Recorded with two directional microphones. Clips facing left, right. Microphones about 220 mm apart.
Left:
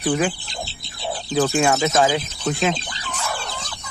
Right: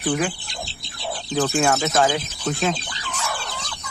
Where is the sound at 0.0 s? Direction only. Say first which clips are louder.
Left 2 dB; 20° left (ahead or behind).